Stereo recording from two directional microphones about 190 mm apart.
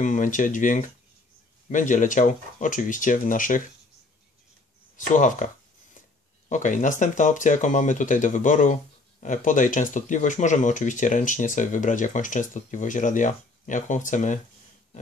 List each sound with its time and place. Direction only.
0.0 s speech: 40° left (ahead or behind)
4.9 s speech: 40° left (ahead or behind)
6.5 s speech: 40° left (ahead or behind)